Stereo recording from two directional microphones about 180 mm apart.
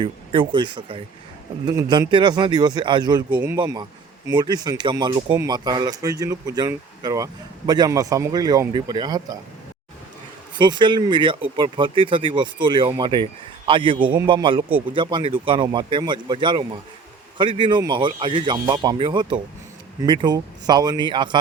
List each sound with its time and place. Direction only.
0.0 s speech: 30° right (ahead or behind)
10.6 s speech: 25° right (ahead or behind)